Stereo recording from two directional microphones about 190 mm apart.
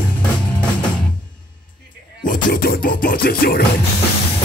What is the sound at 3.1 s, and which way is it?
Music, 50° left (ahead or behind).